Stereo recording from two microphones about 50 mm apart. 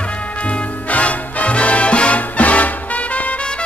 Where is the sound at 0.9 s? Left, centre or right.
Left.